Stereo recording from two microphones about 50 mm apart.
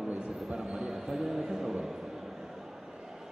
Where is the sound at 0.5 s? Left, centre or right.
Centre.